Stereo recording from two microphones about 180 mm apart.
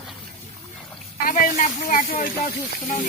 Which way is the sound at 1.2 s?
50° left (ahead or behind).